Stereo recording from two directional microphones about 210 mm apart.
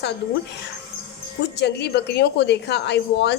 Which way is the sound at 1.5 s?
55° left (ahead or behind).